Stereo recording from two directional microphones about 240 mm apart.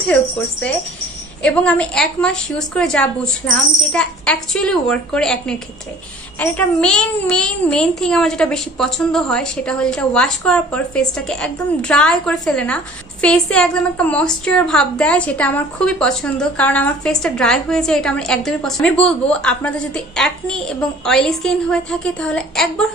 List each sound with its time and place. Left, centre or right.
0.0 s a child's voice: centre